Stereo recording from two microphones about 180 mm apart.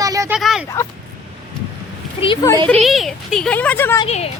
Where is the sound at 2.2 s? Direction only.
25° left (ahead or behind).